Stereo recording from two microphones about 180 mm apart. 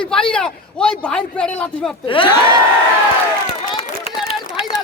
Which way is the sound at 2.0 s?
30° left (ahead or behind).